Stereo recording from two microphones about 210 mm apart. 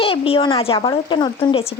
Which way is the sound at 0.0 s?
25° left (ahead or behind).